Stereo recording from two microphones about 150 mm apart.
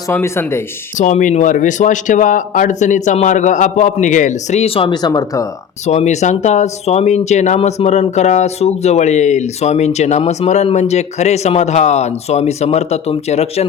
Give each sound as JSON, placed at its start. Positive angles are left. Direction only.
{"t": 0.1, "sound": "speech", "side_deg": 15}
{"t": 0.9, "sound": "speech", "side_deg": 55}
{"t": 5.8, "sound": "speech", "side_deg": 50}